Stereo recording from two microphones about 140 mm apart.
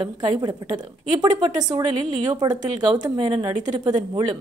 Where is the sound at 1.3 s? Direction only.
30° right (ahead or behind).